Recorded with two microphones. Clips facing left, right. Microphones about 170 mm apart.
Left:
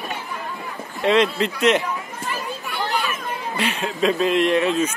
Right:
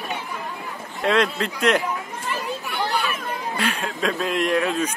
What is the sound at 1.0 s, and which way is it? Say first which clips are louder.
Speech: left 3 dB; centre (ahead or behind).